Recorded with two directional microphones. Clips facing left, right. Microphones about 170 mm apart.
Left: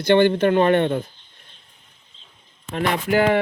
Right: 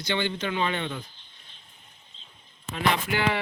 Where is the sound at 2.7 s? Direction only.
45° left (ahead or behind).